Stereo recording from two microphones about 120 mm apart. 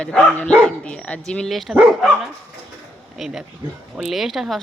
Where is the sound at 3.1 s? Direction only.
Centre (ahead or behind).